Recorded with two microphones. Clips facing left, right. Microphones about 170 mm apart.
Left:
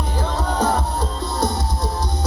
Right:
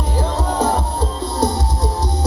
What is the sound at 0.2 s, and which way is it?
Music, 30° right (ahead or behind).